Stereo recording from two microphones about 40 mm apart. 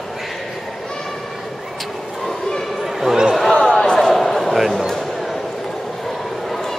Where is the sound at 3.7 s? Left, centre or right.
Centre.